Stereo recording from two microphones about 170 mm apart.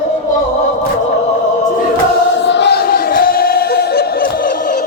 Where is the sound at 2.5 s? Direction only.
85° left; by 4.5 s 65° left (ahead or behind).